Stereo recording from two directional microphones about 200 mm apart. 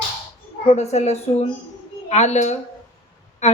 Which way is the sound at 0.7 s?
35° left (ahead or behind).